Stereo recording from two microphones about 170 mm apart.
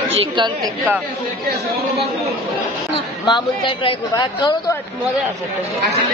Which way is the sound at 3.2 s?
25° left (ahead or behind).